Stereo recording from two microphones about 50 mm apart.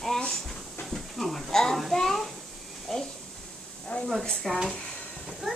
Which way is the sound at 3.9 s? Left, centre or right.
Left.